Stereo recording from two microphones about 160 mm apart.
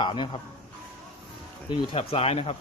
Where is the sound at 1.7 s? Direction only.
35° left (ahead or behind).